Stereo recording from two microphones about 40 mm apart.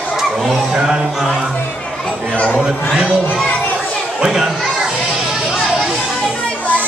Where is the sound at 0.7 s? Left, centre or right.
Centre.